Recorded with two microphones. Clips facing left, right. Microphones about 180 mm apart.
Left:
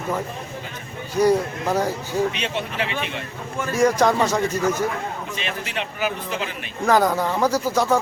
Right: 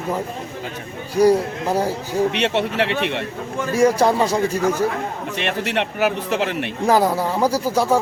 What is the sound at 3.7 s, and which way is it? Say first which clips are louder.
Speech: right 2 dB; 10° right (ahead or behind).